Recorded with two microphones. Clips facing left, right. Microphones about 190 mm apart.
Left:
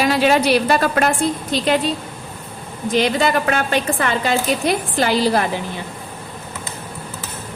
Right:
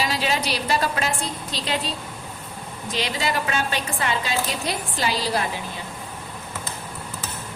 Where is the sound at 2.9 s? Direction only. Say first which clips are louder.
Left 9 dB; 55° left (ahead or behind).